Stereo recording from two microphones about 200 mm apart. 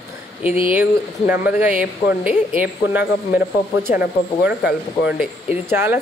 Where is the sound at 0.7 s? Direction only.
10° right (ahead or behind).